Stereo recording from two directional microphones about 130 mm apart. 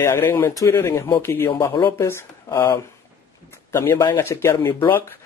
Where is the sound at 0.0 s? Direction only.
20° left (ahead or behind).